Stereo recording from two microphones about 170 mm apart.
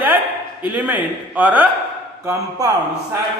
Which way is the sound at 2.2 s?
20° right (ahead or behind).